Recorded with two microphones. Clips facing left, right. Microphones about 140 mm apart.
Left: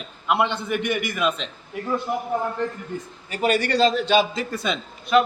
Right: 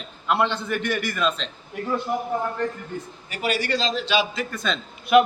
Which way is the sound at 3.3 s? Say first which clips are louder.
Left 4 dB; 50° left (ahead or behind).